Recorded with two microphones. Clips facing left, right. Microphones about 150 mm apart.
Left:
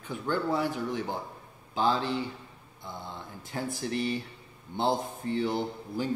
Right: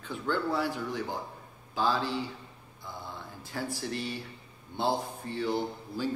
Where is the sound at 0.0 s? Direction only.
15° left (ahead or behind).